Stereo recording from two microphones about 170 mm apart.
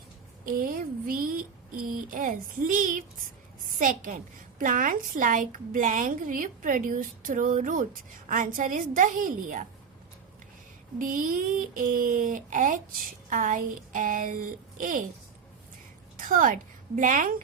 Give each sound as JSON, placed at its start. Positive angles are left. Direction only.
{"t": 0.4, "sound": "speech", "side_deg": -55}
{"t": 10.9, "sound": "speech", "side_deg": -55}
{"t": 16.1, "sound": "a woman's voice", "side_deg": -55}